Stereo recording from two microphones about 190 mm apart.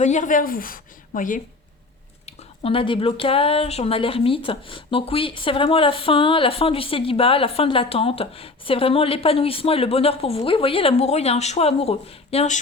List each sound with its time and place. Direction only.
0.0 s a woman's voice: 40° left (ahead or behind)
2.2 s speech: 30° left (ahead or behind)